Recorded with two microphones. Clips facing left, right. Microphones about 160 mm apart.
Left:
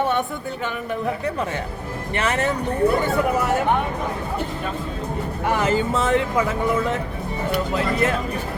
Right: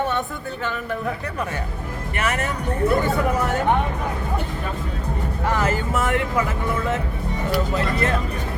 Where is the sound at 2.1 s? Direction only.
30° left (ahead or behind).